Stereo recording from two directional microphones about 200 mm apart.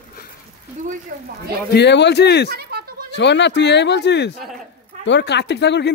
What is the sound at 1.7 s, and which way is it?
Speech, 60° left (ahead or behind).